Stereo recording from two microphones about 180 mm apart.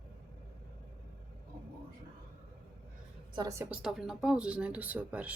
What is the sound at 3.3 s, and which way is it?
Speech, 20° right (ahead or behind).